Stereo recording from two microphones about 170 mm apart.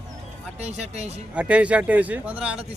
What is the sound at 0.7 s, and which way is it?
Speech, 40° right (ahead or behind).